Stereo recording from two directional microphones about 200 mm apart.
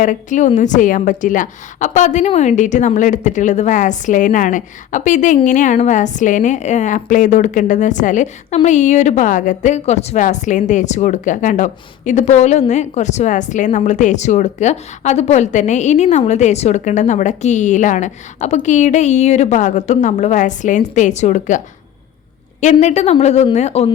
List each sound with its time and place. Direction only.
0.0 s a woman's voice: 40° left (ahead or behind)
22.6 s a woman's voice: 35° left (ahead or behind)